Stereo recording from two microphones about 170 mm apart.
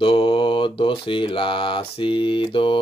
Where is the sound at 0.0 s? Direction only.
30° left (ahead or behind).